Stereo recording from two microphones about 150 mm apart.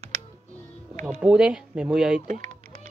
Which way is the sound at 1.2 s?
5° right (ahead or behind).